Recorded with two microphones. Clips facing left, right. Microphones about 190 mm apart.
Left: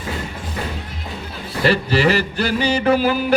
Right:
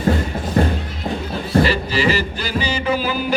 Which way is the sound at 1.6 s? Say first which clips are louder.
Left 2 dB; 60° left (ahead or behind).